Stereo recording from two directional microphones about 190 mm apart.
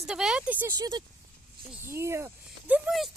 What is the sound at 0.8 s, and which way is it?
Speech, 20° right (ahead or behind).